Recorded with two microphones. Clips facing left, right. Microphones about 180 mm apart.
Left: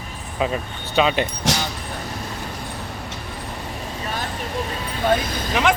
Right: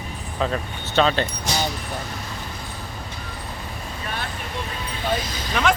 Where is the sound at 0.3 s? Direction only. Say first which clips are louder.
Left 1 dB; 10° left (ahead or behind).